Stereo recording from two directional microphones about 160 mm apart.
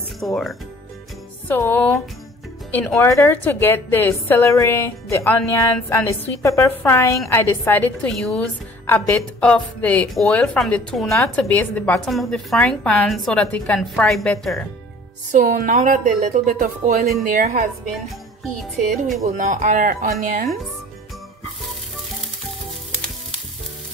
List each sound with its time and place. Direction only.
0.2 s a woman's voice: centre (ahead or behind)
1.5 s a woman's voice: 10° left (ahead or behind)
15.3 s a woman's voice: 55° right (ahead or behind)
19.2 s speech: 50° right (ahead or behind)